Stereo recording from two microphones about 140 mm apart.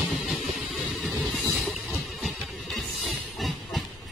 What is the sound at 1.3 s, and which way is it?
Train, centre (ahead or behind).